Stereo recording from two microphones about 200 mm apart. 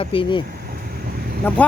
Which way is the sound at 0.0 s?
25° left (ahead or behind).